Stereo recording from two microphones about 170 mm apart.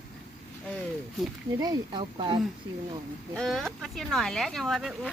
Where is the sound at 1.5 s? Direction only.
25° right (ahead or behind).